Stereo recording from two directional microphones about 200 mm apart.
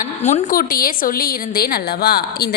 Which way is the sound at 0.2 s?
35° left (ahead or behind).